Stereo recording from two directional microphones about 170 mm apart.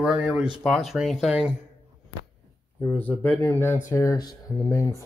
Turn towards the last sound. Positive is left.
turn(degrees=15)  # may be behind; listen again after turning